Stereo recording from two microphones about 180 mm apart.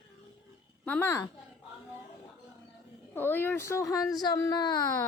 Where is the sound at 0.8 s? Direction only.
10° left (ahead or behind).